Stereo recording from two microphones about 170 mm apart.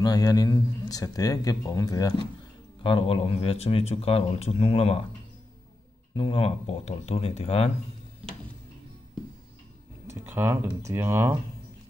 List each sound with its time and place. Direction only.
0.0 s a man's voice: 20° left (ahead or behind)
6.1 s speech: 30° left (ahead or behind)
10.2 s speech: 15° right (ahead or behind)